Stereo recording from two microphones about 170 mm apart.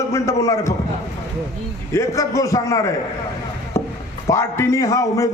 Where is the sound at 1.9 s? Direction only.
20° left (ahead or behind).